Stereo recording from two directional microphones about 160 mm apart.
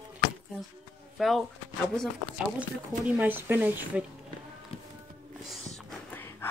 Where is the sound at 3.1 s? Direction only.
10° right (ahead or behind).